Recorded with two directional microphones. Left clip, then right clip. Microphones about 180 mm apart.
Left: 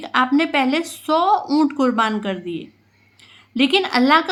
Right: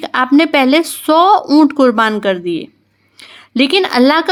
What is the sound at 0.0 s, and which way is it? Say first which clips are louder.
A woman's voice: right 6 dB; 35° right (ahead or behind).